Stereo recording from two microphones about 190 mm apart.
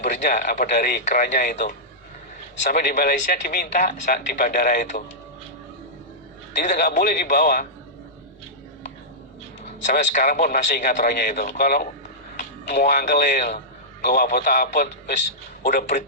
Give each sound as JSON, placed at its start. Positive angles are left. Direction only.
{"t": 0.0, "sound": "a man's voice", "side_deg": 40}
{"t": 6.6, "sound": "a man's voice", "side_deg": 45}
{"t": 9.8, "sound": "a man's voice", "side_deg": 45}
{"t": 12.4, "sound": "a man's voice", "side_deg": 40}